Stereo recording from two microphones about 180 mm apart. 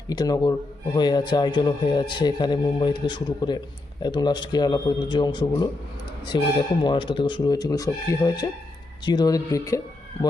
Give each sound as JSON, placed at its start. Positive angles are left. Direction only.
{"t": 0.1, "sound": "a man's voice", "side_deg": 20}